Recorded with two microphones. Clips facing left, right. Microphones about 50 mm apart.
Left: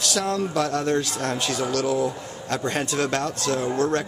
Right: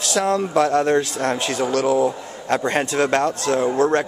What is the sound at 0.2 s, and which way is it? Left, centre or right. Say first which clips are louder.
A man's voice: right 7 dB; right.